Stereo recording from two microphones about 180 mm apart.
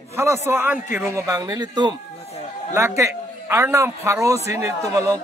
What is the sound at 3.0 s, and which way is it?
A man's voice, 15° right (ahead or behind).